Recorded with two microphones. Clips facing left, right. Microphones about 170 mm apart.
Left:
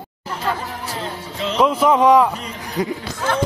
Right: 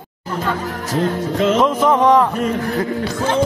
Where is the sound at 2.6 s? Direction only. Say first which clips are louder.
Right 3 dB; 15° left (ahead or behind).